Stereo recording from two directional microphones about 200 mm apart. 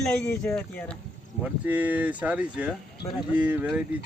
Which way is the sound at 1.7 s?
10° right (ahead or behind).